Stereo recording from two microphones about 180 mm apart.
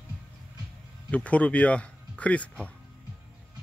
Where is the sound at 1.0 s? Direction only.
5° left (ahead or behind).